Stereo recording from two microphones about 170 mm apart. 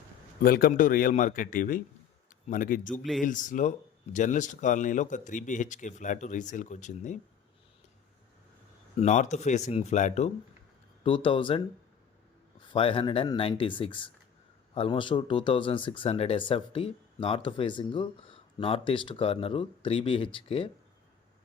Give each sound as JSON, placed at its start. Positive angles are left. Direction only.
{"t": 0.4, "sound": "speech", "side_deg": 60}
{"t": 2.9, "sound": "speech", "side_deg": 0}
{"t": 3.2, "sound": "speech", "side_deg": 50}
{"t": 9.0, "sound": "speech", "side_deg": 45}
{"t": 11.0, "sound": "speech", "side_deg": 30}
{"t": 12.6, "sound": "speech", "side_deg": 30}